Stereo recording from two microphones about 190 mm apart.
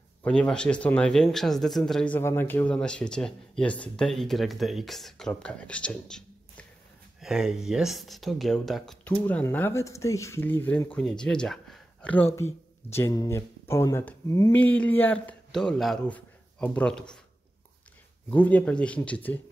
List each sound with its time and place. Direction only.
0.2 s speech: 5° left (ahead or behind)
18.3 s speech: 10° left (ahead or behind)